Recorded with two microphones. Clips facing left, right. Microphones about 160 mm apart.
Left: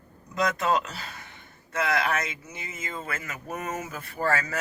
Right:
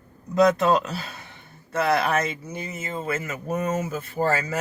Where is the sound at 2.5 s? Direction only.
30° right (ahead or behind).